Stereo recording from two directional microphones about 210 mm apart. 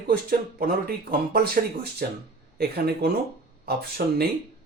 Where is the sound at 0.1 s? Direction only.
45° right (ahead or behind).